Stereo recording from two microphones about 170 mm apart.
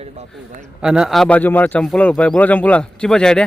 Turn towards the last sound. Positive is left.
turn(degrees=5)  # may be behind; listen again after turning